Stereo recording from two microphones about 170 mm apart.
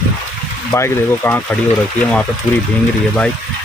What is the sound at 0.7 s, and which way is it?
Speech, 15° left (ahead or behind).